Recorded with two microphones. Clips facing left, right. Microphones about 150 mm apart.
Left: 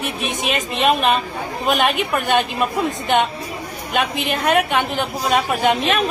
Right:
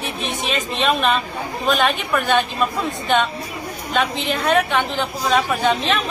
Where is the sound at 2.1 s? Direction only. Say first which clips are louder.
Even; 20° left (ahead or behind).